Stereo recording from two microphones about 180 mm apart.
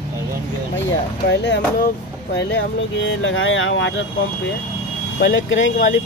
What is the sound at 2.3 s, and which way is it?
Speech, 80° left.